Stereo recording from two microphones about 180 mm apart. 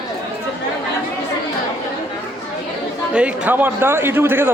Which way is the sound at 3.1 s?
5° right (ahead or behind).